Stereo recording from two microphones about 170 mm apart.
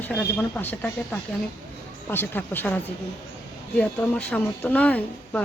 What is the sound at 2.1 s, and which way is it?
Speech, 10° left (ahead or behind).